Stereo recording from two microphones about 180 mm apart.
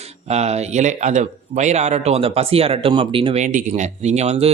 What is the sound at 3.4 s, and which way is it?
Speech, 40° right (ahead or behind).